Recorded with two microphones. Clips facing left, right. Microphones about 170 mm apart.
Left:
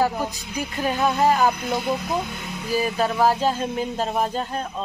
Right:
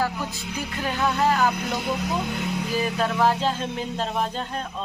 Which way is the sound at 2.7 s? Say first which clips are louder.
Left 4 dB; 10° left (ahead or behind).